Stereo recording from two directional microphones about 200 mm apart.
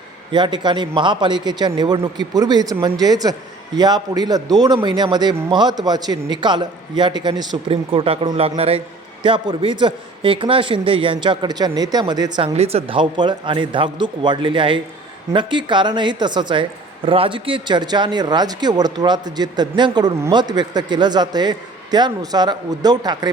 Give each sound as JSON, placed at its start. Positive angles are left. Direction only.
{"t": 0.3, "sound": "speech", "side_deg": -25}